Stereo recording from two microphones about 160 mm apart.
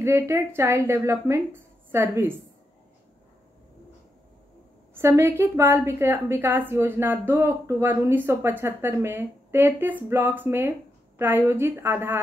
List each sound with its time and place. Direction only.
0.0 s a woman's voice: 15° right (ahead or behind)
4.9 s a woman's voice: 15° right (ahead or behind)